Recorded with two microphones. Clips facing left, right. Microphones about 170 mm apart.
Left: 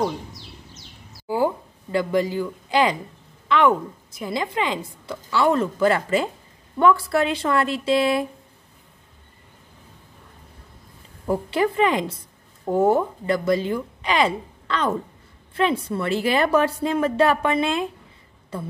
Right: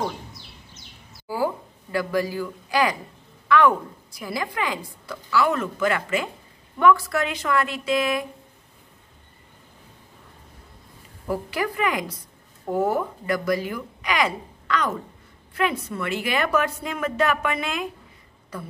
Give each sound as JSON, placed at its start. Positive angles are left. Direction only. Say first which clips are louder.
{"t": 1.2, "sound": "a sound", "louder": "left 3 dB", "side_deg": 20}
{"t": 3.4, "sound": "a woman's voice", "louder": "even", "side_deg": 20}
{"t": 11.2, "sound": "a woman's voice", "louder": "left 5 dB", "side_deg": 25}